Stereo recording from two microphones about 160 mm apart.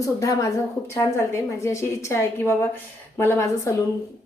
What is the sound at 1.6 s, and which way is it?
A woman's voice, 20° left (ahead or behind).